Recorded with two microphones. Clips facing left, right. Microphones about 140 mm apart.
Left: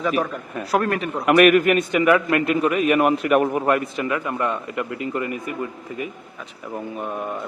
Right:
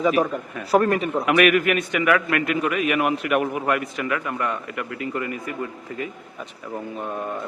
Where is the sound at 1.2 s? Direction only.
45° left (ahead or behind); by 6.0 s 15° left (ahead or behind).